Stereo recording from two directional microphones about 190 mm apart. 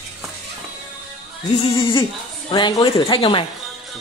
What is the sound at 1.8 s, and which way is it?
Speech, 25° left (ahead or behind).